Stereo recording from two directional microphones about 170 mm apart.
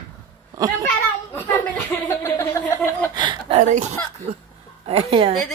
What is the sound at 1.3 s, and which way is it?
Speech, 15° left (ahead or behind).